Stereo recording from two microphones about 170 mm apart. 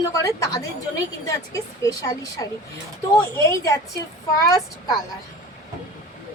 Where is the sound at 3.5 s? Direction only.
20° left (ahead or behind).